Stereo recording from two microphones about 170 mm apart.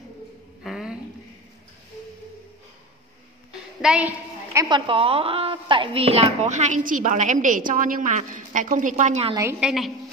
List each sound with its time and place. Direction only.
0.7 s a sound: 5° right (ahead or behind)
3.8 s a woman's voice: 5° right (ahead or behind)
4.6 s a woman's voice: 25° right (ahead or behind); by 9.3 s 45° right (ahead or behind)
9.3 s a woman's voice: 20° right (ahead or behind)
9.6 s a woman's voice: centre (ahead or behind)